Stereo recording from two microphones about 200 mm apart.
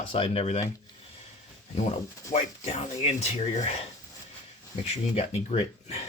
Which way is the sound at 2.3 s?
35° left (ahead or behind).